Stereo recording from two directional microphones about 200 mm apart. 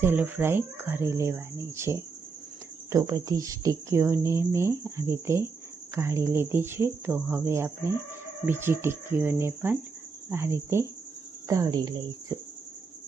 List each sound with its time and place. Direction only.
0.0 s speech: 10° right (ahead or behind)